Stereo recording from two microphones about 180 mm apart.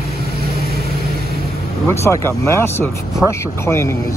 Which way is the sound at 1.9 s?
15° left (ahead or behind).